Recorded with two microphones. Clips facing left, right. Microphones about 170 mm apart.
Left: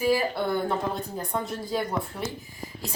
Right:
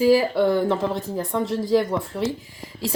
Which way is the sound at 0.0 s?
90° right.